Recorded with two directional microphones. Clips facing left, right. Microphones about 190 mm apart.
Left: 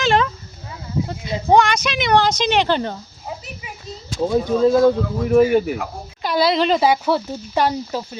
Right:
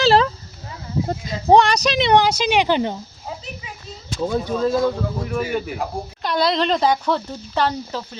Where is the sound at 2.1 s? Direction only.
10° right (ahead or behind).